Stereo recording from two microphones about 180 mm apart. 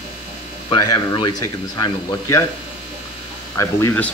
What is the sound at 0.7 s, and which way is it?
Speech, 25° left (ahead or behind).